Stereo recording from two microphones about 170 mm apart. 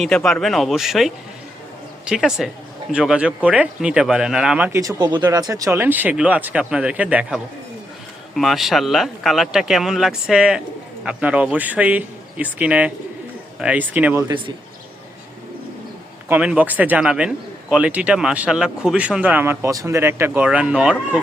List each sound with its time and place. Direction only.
0.0 s a man's voice: 5° left (ahead or behind)
14.3 s a man's voice: 30° right (ahead or behind)
16.3 s a man's voice: 10° right (ahead or behind)